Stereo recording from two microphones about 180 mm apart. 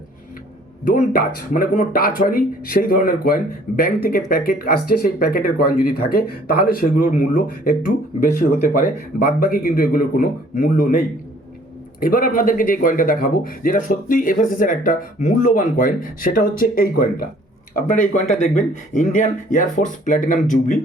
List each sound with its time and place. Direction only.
0.9 s speech: 50° left (ahead or behind)